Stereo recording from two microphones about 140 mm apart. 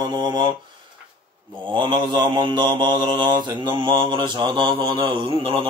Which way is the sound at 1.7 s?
35° right (ahead or behind).